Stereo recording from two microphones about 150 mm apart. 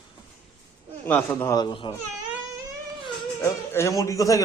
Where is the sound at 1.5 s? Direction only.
30° left (ahead or behind).